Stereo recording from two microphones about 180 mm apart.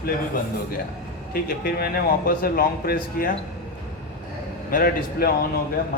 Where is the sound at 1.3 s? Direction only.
55° left (ahead or behind).